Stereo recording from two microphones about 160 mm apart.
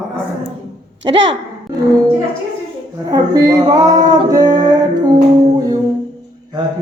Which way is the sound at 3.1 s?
20° right (ahead or behind).